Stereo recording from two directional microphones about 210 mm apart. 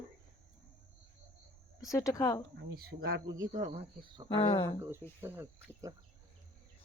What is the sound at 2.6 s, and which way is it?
Speech, 50° right (ahead or behind).